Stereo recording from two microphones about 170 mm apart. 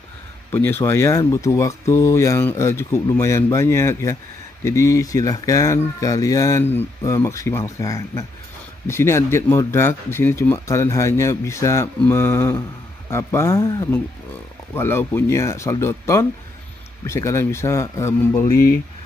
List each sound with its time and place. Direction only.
0.5 s speech: 15° left (ahead or behind)